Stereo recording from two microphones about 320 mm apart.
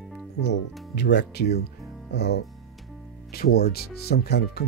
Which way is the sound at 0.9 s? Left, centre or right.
Left.